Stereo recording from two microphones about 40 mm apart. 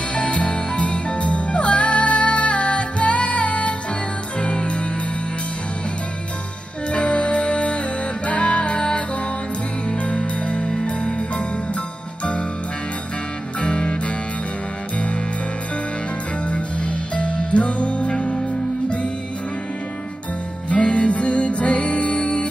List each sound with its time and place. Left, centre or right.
0.1 s music: left
6.9 s music: left
13.6 s music: left
16.4 s music: left
20.7 s music: left